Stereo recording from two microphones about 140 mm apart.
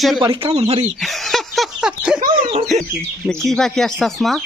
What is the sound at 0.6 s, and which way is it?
Speech, 50° right (ahead or behind).